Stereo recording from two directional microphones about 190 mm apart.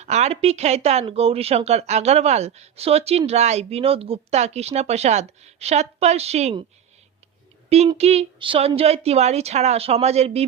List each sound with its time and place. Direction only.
0.0 s speech: 35° right (ahead or behind)
7.9 s speech: 35° right (ahead or behind)